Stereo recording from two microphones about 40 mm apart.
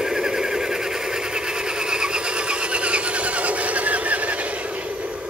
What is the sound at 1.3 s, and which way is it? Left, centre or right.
Sewing machine, centre.